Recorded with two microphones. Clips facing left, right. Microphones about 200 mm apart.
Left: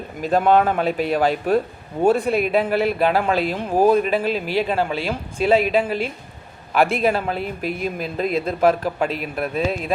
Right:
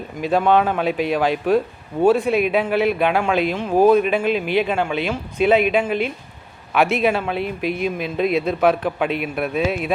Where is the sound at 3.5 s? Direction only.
15° left (ahead or behind).